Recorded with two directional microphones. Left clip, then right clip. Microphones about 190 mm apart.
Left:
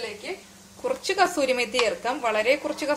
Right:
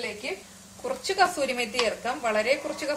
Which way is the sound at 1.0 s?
45° left (ahead or behind).